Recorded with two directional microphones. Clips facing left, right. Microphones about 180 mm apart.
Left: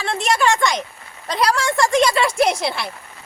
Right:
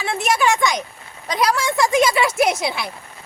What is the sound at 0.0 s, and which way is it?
A man's voice, 5° right (ahead or behind).